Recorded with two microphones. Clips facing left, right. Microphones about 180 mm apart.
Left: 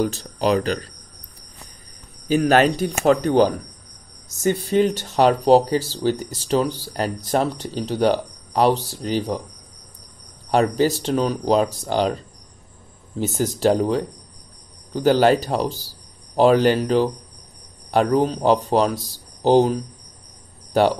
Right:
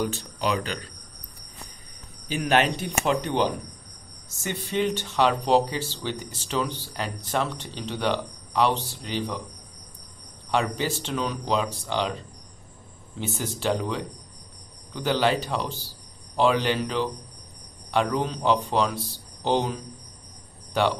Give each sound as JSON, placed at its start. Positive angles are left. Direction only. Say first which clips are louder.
{"t": 0.0, "sound": "speech", "louder": "left 6 dB", "side_deg": 40}
{"t": 2.2, "sound": "speech", "louder": "left 7 dB", "side_deg": 40}
{"t": 10.5, "sound": "speech", "louder": "left 8 dB", "side_deg": 40}
{"t": 13.2, "sound": "speech", "louder": "left 9 dB", "side_deg": 40}